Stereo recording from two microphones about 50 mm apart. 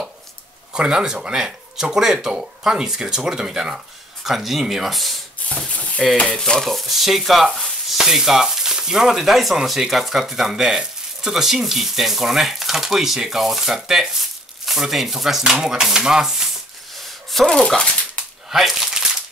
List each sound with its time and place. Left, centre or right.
0.7 s speech: centre
4.2 s sizzle: centre
5.7 s a sound: left
6.3 s sizzle: centre
7.9 s speech: centre
14.7 s sizzle: centre
15.6 s speech: centre
16.9 s a sound: centre
17.5 s speech: centre
18.5 s speech: centre
18.9 s crumpling: centre